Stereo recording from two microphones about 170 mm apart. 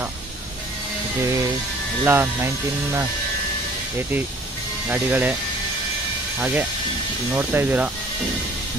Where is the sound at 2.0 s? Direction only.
10° right (ahead or behind).